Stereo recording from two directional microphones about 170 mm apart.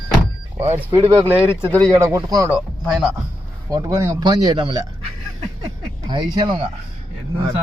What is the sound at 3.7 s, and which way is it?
A man's voice, 15° right (ahead or behind).